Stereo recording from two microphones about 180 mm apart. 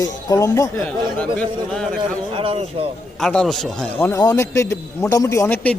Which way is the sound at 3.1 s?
5° left (ahead or behind).